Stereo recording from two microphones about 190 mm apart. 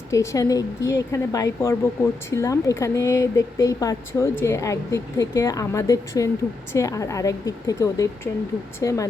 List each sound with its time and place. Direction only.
0.1 s speech: 15° left (ahead or behind)